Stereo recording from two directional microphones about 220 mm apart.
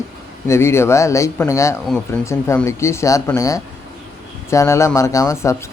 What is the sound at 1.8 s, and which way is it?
A man's voice, centre (ahead or behind).